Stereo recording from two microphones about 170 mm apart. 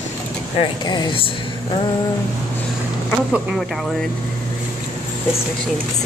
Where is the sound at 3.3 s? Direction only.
5° right (ahead or behind).